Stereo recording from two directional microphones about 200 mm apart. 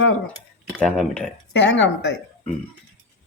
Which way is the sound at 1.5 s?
65° left (ahead or behind).